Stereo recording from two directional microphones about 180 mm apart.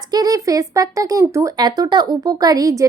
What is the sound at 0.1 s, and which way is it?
Speech, 20° right (ahead or behind).